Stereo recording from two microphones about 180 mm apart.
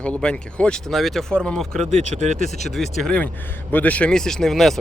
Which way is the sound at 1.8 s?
40° right (ahead or behind).